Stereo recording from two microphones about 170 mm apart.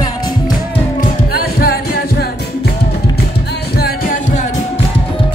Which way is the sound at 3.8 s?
65° left (ahead or behind).